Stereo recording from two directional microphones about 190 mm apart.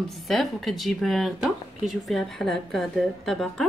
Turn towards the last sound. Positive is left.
turn(degrees=0)  # may be behind; listen again after turning